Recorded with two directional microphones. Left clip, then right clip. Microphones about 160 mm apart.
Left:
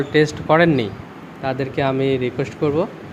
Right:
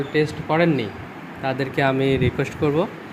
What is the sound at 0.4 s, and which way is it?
Speech, 30° left (ahead or behind).